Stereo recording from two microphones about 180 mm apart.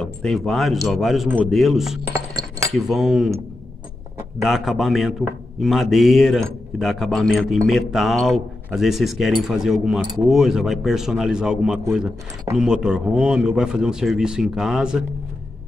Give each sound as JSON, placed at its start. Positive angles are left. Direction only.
{"t": 0.0, "sound": "a man's voice", "side_deg": 5}
{"t": 2.0, "sound": "chink", "side_deg": -15}
{"t": 2.7, "sound": "a man's voice", "side_deg": 0}
{"t": 4.5, "sound": "a man's voice", "side_deg": 0}